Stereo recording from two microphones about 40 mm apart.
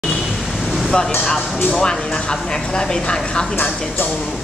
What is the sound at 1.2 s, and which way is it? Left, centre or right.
Speech, centre.